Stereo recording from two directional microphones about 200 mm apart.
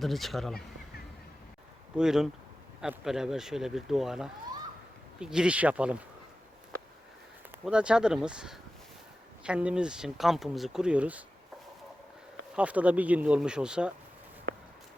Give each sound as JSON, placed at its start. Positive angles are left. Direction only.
{"t": 0.0, "sound": "speech", "side_deg": 0}
{"t": 2.0, "sound": "speech", "side_deg": 0}
{"t": 7.6, "sound": "speech", "side_deg": -5}
{"t": 12.5, "sound": "speech", "side_deg": -5}